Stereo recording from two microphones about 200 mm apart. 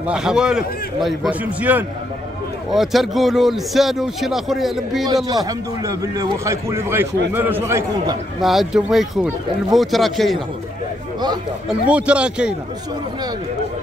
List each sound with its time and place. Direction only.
0.0 s speech: 5° right (ahead or behind)
5.0 s a man's voice: 20° right (ahead or behind)
8.4 s speech: centre (ahead or behind)
11.9 s speech: 5° right (ahead or behind)